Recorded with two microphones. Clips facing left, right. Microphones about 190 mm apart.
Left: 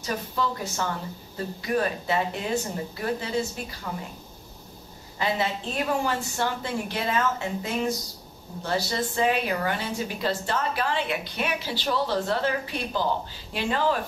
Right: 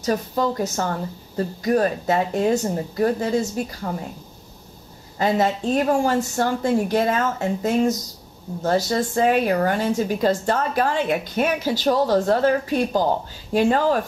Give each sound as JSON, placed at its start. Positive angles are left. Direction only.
{"t": 0.0, "sound": "a woman's voice", "side_deg": -40}
{"t": 5.2, "sound": "a woman's voice", "side_deg": -45}